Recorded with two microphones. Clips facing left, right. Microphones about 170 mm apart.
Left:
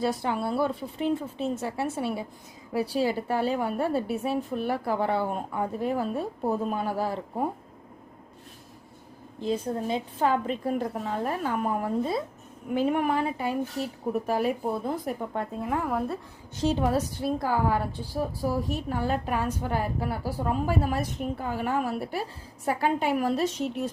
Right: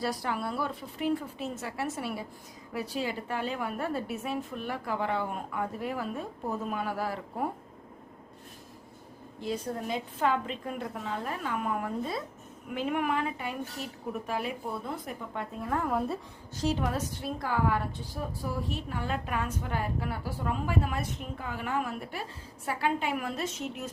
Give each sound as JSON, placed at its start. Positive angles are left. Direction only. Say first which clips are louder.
{"t": 0.0, "sound": "a woman's voice", "louder": "left 5 dB", "side_deg": 25}
{"t": 9.5, "sound": "a woman's voice", "louder": "left 5 dB", "side_deg": 30}
{"t": 15.8, "sound": "speech", "louder": "right 1 dB", "side_deg": 0}
{"t": 16.6, "sound": "a woman's voice", "louder": "left 5 dB", "side_deg": 30}